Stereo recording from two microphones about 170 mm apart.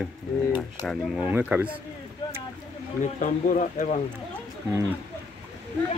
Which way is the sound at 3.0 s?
50° left (ahead or behind).